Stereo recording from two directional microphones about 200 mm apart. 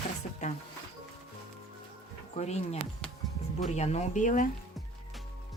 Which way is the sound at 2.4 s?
35° left (ahead or behind).